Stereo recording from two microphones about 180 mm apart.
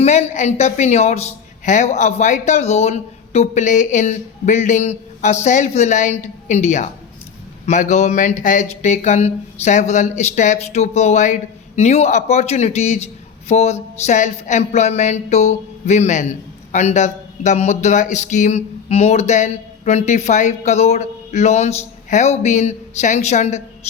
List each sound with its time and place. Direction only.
0.0 s speech: 40° left (ahead or behind)